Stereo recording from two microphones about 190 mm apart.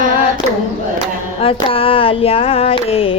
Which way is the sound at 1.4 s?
30° left (ahead or behind).